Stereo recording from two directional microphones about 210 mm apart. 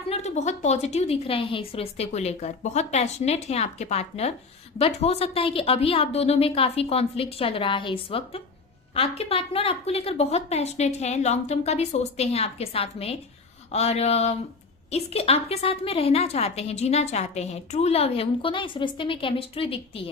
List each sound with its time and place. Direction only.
0.1 s a woman's voice: 30° left (ahead or behind)